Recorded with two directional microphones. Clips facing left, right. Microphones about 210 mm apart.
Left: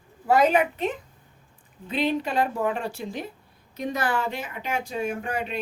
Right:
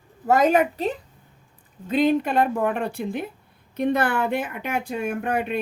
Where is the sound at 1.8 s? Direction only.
45° right (ahead or behind).